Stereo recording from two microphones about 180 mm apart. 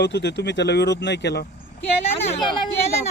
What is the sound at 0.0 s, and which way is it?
Speech, 75° left (ahead or behind).